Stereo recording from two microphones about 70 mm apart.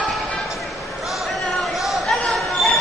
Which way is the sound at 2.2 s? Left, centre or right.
Centre.